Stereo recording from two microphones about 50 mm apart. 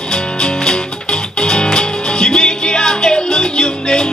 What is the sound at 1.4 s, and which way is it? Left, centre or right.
Music, centre.